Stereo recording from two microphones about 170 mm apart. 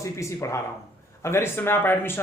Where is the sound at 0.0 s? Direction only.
15° left (ahead or behind).